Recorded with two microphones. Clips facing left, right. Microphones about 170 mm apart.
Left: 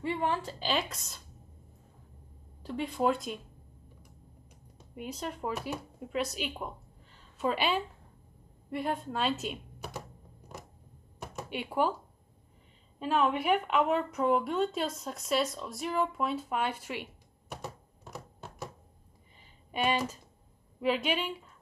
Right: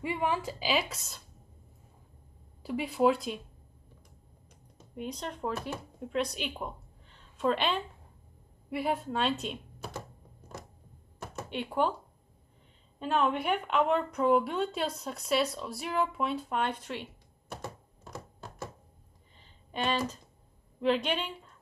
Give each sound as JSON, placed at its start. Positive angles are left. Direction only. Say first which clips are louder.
{"t": 0.0, "sound": "a woman's voice", "louder": "even", "side_deg": -10}
{"t": 2.6, "sound": "a woman's voice", "louder": "right 3 dB", "side_deg": -10}
{"t": 4.9, "sound": "speech", "louder": "even", "side_deg": 5}
{"t": 8.6, "sound": "a woman's voice", "louder": "right 2 dB", "side_deg": -5}
{"t": 11.3, "sound": "speech", "louder": "even", "side_deg": 10}
{"t": 13.0, "sound": "a woman's voice", "louder": "even", "side_deg": 0}
{"t": 18.1, "sound": "a sound", "louder": "right 1 dB", "side_deg": 15}
{"t": 19.7, "sound": "a woman's voice", "louder": "left 1 dB", "side_deg": 10}